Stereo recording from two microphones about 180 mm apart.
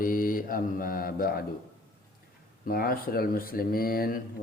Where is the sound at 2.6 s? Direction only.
55° left (ahead or behind).